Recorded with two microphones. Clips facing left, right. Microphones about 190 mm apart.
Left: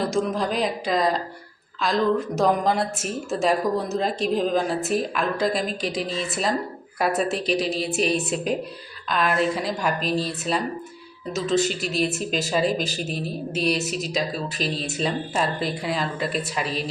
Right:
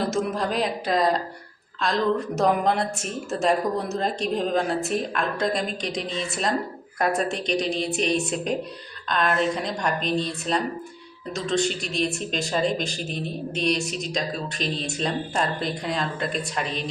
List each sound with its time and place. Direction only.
0.0 s speech: centre (ahead or behind)